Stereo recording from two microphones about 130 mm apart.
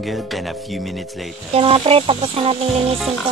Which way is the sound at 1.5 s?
45° right (ahead or behind).